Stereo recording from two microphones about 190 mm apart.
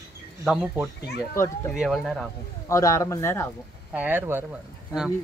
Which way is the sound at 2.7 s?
15° left (ahead or behind).